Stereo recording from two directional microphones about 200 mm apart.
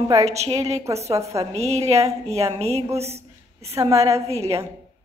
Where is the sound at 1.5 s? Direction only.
30° right (ahead or behind).